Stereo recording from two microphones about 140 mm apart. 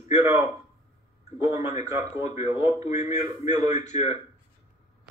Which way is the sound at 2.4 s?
25° right (ahead or behind).